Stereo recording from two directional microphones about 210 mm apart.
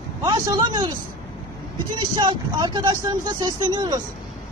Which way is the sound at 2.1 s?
20° right (ahead or behind).